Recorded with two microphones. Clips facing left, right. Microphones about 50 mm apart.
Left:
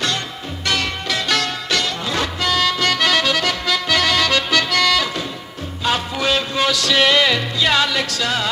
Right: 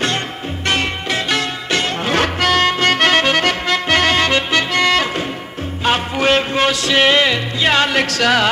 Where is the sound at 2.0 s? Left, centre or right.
Right.